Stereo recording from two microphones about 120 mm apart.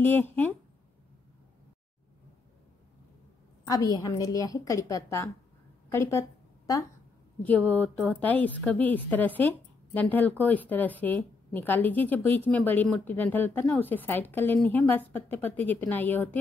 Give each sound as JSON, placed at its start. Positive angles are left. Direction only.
{"t": 0.0, "sound": "a woman's voice", "side_deg": 15}
{"t": 3.6, "sound": "a woman's voice", "side_deg": 30}
{"t": 5.9, "sound": "a sound", "side_deg": 20}
{"t": 7.4, "sound": "a woman's voice", "side_deg": 15}